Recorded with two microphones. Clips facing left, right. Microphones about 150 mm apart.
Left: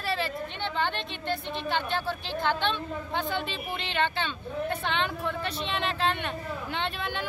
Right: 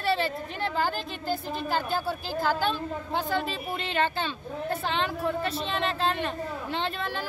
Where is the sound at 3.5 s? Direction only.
40° right (ahead or behind).